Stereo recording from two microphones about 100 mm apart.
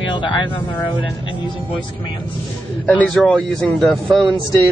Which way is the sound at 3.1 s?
5° left (ahead or behind).